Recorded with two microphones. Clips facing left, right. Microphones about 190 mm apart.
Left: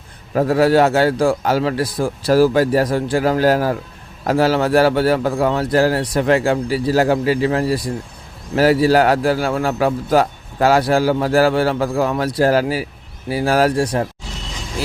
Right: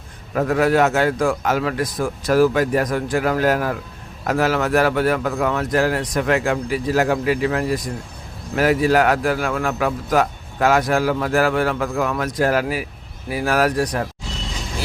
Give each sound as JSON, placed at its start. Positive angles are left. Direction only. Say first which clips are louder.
{"t": 0.3, "sound": "a man's voice", "louder": "left 3 dB", "side_deg": 30}